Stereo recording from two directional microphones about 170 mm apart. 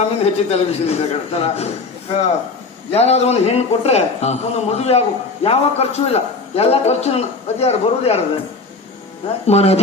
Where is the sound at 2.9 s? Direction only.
40° left (ahead or behind).